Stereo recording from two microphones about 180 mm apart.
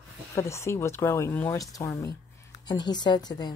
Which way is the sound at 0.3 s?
15° left (ahead or behind).